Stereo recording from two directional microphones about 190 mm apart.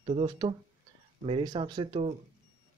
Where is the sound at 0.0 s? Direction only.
30° right (ahead or behind).